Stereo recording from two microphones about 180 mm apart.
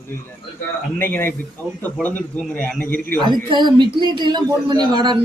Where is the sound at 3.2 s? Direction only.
25° right (ahead or behind).